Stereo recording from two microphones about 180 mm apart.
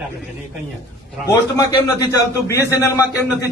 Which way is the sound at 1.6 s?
20° left (ahead or behind).